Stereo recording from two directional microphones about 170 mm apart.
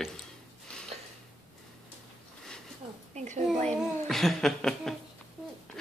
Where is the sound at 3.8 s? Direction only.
Centre (ahead or behind).